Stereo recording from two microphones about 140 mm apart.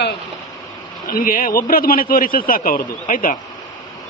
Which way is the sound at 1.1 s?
80° left.